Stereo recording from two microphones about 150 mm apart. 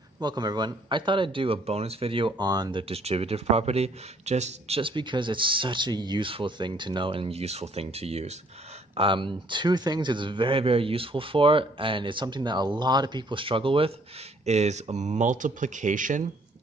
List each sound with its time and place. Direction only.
0.2 s speech: 25° right (ahead or behind)
2.8 s speech: 45° right (ahead or behind)
14.4 s speech: 50° right (ahead or behind)